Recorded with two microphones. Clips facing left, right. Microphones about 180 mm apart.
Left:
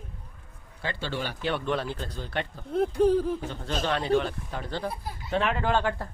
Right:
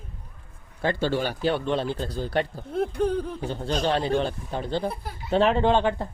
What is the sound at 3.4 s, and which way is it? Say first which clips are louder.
Speech: right 5 dB; 30° right (ahead or behind).